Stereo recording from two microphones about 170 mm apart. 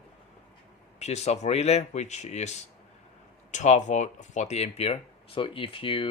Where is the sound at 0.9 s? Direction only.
40° left (ahead or behind).